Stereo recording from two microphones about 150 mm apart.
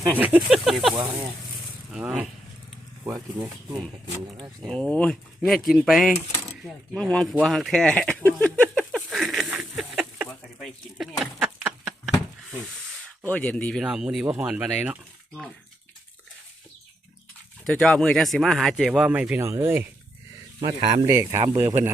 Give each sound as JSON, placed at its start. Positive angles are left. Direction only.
{"t": 0.2, "sound": "speech", "side_deg": -10}
{"t": 4.6, "sound": "speech", "side_deg": 5}
{"t": 8.8, "sound": "a sound", "side_deg": -5}
{"t": 13.2, "sound": "speech", "side_deg": 10}
{"t": 13.8, "sound": "speech", "side_deg": -5}
{"t": 17.6, "sound": "speech", "side_deg": 5}
{"t": 19.4, "sound": "speech", "side_deg": -20}